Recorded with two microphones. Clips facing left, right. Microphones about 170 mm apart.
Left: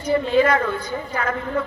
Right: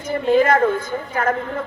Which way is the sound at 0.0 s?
50° right (ahead or behind).